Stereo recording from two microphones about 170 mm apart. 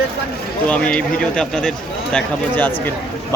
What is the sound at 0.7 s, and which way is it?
A man's voice, 5° left (ahead or behind).